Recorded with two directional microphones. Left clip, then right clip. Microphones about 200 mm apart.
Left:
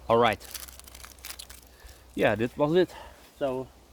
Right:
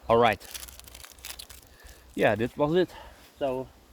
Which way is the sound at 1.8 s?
20° right (ahead or behind).